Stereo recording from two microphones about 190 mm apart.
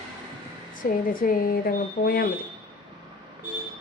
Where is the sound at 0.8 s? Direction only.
45° left (ahead or behind).